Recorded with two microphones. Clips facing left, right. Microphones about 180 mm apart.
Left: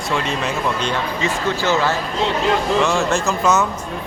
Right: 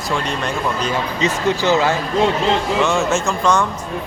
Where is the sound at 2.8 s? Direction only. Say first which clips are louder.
Right 1 dB; centre (ahead or behind).